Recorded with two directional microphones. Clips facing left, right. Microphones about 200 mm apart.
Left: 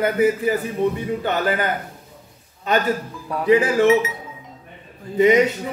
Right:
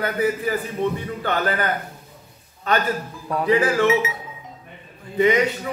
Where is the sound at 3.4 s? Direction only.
15° left (ahead or behind).